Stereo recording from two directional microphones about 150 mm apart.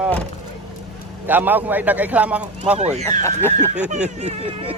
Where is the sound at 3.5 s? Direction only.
55° right (ahead or behind).